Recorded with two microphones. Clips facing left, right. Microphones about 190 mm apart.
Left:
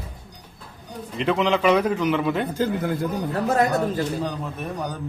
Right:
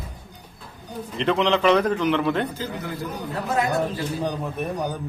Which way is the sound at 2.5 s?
50° left (ahead or behind).